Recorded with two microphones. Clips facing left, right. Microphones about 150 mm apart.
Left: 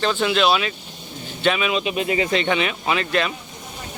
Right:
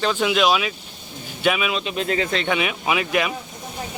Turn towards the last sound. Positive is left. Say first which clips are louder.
# even
turn(degrees=-10)  # may be behind; listen again after turning